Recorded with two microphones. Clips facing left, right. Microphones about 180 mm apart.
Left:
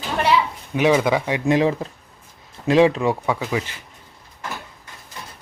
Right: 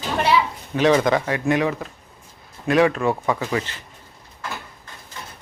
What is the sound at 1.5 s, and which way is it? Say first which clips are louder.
Speech: left 4 dB; 25° left (ahead or behind).